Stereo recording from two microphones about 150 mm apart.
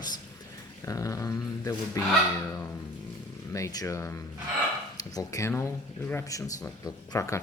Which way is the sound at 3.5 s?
20° left (ahead or behind).